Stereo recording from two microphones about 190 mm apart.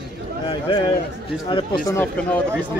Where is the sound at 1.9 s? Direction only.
10° left (ahead or behind).